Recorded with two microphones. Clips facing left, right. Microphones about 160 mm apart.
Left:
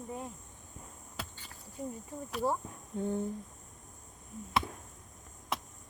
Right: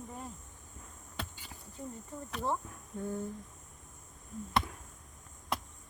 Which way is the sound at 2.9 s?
25° left (ahead or behind).